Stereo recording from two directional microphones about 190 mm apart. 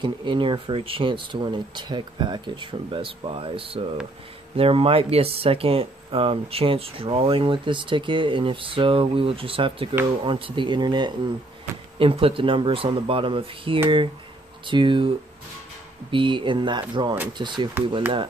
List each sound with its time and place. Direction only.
0.0 s speech: 25° right (ahead or behind)